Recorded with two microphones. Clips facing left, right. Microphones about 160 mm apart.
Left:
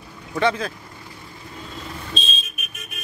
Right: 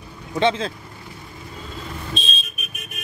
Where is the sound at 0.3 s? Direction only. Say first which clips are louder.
Right 1 dB; 25° right (ahead or behind).